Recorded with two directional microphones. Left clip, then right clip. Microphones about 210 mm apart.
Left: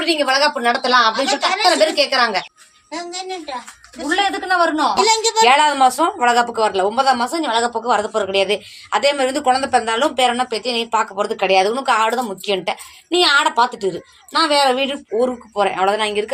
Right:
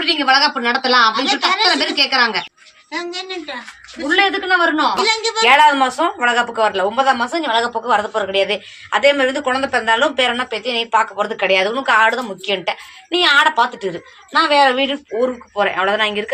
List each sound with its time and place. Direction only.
0.0 s a woman's voice: 45° left (ahead or behind)
4.1 s a woman's voice: 45° left (ahead or behind)